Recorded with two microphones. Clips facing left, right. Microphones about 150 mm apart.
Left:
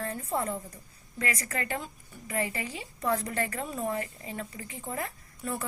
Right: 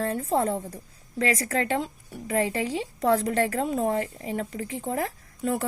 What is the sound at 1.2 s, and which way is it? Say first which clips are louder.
Speech: right 8 dB; 90° right.